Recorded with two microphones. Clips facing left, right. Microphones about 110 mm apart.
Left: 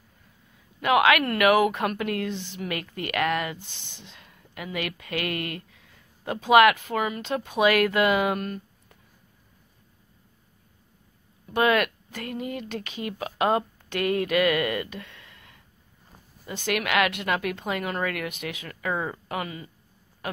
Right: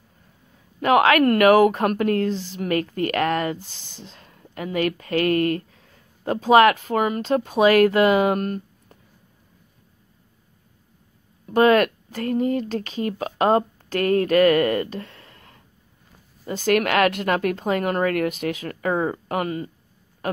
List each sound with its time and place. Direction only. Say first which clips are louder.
0.7 s a woman's voice: right 4 dB; 40° right (ahead or behind)
11.4 s a woman's voice: right 6 dB; 40° right (ahead or behind)